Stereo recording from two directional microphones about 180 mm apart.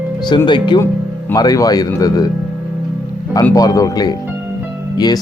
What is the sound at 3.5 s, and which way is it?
Speech, 20° left (ahead or behind).